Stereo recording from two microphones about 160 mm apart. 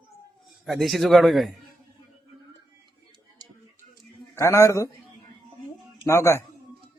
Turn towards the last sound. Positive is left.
turn(degrees=15)  # may be behind; listen again after turning